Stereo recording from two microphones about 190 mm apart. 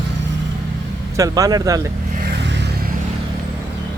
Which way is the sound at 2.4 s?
65° right (ahead or behind).